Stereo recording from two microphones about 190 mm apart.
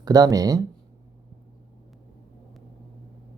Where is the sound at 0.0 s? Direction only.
20° right (ahead or behind).